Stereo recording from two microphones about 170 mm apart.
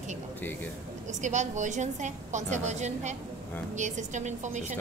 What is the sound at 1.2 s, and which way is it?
A woman's voice, 45° right (ahead or behind).